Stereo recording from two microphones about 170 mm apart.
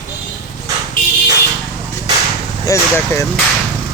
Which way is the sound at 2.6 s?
15° left (ahead or behind).